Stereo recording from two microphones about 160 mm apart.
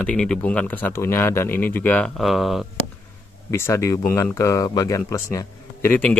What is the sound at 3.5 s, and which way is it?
A man's voice, 15° left (ahead or behind).